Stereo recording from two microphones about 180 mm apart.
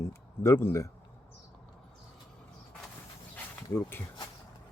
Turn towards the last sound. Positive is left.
turn(degrees=15)  # may be behind; listen again after turning